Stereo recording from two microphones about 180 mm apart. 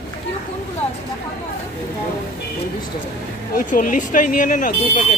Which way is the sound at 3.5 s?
50° left (ahead or behind).